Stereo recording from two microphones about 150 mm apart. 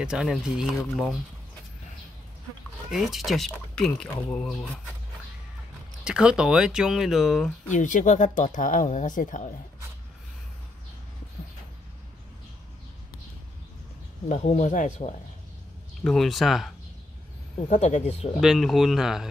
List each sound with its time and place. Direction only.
0.0 s speech: 5° right (ahead or behind)
2.9 s speech: centre (ahead or behind)
6.0 s speech: 5° right (ahead or behind)
7.7 s speech: 55° left (ahead or behind)
14.3 s speech: 50° left (ahead or behind)
16.0 s speech: 5° left (ahead or behind)
17.6 s speech: 50° left (ahead or behind)
18.4 s speech: centre (ahead or behind)